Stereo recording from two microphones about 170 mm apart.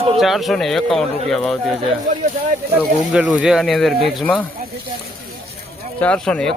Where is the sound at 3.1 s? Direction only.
5° right (ahead or behind).